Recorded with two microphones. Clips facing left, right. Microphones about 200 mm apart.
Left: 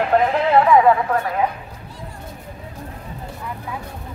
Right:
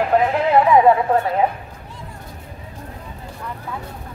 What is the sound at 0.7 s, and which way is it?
Speech, 25° right (ahead or behind).